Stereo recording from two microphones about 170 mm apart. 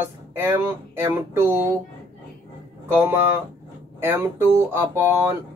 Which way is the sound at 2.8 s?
15° right (ahead or behind).